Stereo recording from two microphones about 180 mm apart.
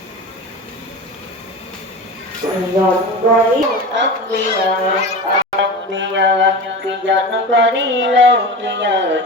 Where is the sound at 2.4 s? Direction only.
20° right (ahead or behind).